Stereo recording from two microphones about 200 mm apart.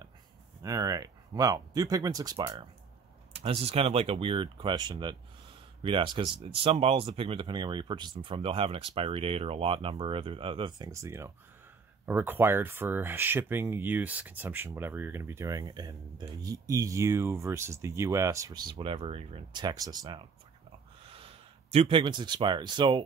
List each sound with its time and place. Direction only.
0.6 s speech: 15° right (ahead or behind)